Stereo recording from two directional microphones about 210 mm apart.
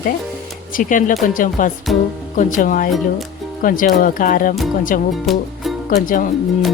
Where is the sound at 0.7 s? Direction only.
40° left (ahead or behind).